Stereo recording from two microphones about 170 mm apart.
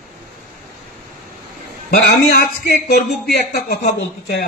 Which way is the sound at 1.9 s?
60° left (ahead or behind).